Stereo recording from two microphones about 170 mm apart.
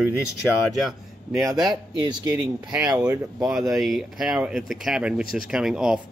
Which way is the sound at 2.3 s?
5° right (ahead or behind).